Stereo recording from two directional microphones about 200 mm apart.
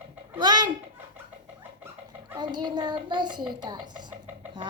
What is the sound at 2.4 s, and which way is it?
A child's voice, 20° right (ahead or behind).